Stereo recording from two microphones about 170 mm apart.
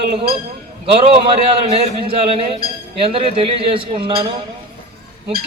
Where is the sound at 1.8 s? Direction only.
35° right (ahead or behind).